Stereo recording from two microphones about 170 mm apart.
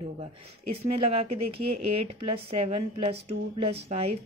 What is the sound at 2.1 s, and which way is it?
A woman's voice, 35° right (ahead or behind).